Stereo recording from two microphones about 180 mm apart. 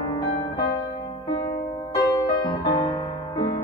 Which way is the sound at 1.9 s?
20° left (ahead or behind).